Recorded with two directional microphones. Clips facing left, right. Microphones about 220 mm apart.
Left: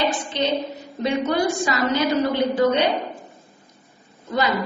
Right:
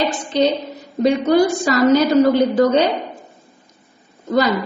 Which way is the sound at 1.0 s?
40° right (ahead or behind).